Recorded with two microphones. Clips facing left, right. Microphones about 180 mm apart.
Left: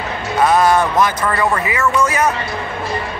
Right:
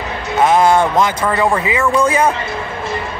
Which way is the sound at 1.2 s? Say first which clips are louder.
Right 2 dB; 15° right (ahead or behind).